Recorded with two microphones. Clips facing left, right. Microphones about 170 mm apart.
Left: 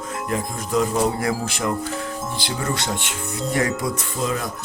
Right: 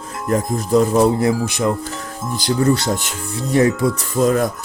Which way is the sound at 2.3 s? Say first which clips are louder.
Right 12 dB; 40° right (ahead or behind).